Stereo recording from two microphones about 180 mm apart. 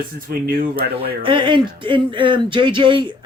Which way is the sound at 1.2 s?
30° right (ahead or behind).